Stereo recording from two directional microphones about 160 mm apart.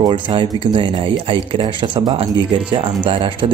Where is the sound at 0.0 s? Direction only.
30° right (ahead or behind).